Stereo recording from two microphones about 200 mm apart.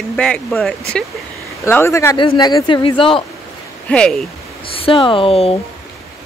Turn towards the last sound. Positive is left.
turn(degrees=30)  # may be behind; listen again after turning